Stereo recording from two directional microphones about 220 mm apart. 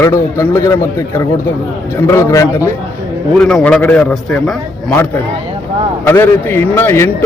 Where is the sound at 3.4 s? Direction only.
Centre (ahead or behind).